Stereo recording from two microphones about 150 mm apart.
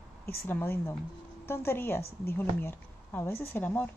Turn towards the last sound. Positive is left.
turn(degrees=15)  # may be behind; listen again after turning